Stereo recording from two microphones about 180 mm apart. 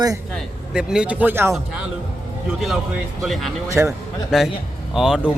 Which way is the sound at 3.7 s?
15° right (ahead or behind).